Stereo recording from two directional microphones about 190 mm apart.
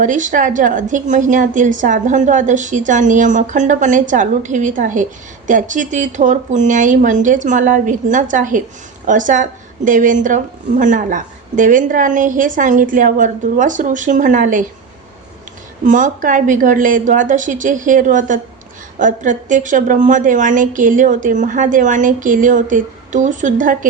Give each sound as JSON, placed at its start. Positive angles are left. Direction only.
{"t": 0.0, "sound": "a woman's voice", "side_deg": -40}
{"t": 15.8, "sound": "a woman's voice", "side_deg": -40}